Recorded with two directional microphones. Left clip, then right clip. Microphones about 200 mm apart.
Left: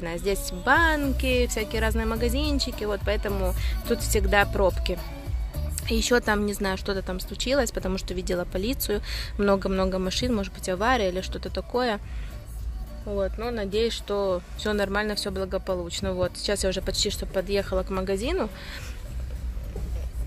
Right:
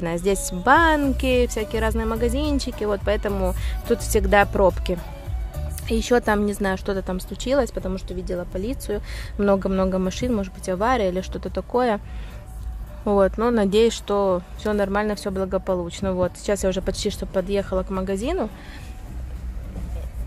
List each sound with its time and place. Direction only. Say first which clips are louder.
0.0 s speech: right 5 dB; 20° right (ahead or behind)
7.7 s speech: right 1 dB; centre (ahead or behind)
13.0 s speech: right 10 dB; 40° right (ahead or behind); by 18.5 s 10° right (ahead or behind)